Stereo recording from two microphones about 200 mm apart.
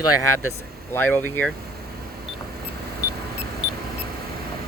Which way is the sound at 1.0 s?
10° left (ahead or behind).